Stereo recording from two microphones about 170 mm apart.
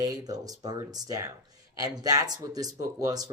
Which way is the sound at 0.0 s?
20° right (ahead or behind).